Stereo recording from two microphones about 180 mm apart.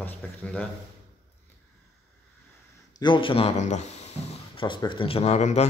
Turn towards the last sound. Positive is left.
turn(degrees=40)  # may be behind; listen again after turning